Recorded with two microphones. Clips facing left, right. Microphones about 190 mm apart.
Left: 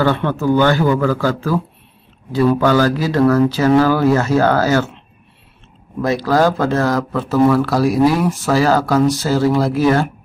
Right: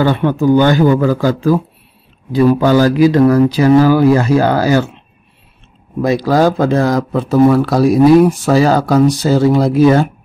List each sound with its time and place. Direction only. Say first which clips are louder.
0.0 s speech: right 4 dB; 15° right (ahead or behind)
5.9 s speech: right 3 dB; 15° right (ahead or behind)